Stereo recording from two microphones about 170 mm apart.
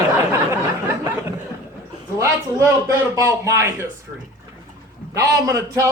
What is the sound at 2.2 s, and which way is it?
A man's voice, 20° right (ahead or behind).